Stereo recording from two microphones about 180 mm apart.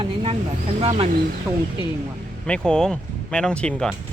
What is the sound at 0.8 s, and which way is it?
Speech, 35° right (ahead or behind).